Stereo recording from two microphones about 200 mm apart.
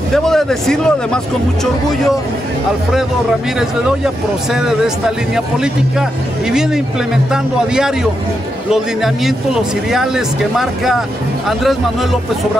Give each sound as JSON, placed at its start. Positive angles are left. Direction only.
{"t": 0.1, "sound": "speech", "side_deg": 0}
{"t": 3.5, "sound": "speech", "side_deg": -5}